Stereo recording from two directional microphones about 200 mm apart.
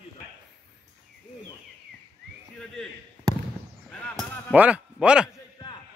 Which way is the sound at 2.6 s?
Centre (ahead or behind).